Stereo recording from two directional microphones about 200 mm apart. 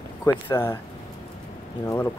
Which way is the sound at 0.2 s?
10° left (ahead or behind).